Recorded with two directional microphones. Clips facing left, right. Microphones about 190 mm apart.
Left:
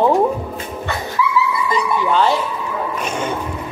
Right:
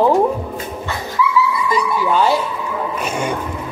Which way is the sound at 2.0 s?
10° right (ahead or behind).